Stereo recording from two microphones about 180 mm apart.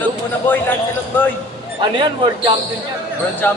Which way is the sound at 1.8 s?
25° right (ahead or behind).